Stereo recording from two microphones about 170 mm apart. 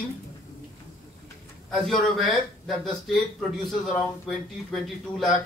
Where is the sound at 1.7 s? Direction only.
Centre (ahead or behind).